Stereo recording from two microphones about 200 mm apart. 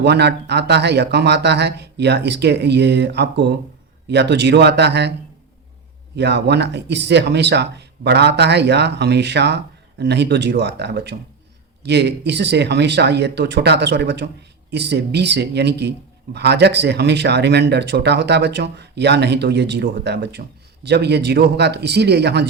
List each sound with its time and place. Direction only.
0.0 s a man's voice: 55° right (ahead or behind)
6.1 s a man's voice: 55° right (ahead or behind)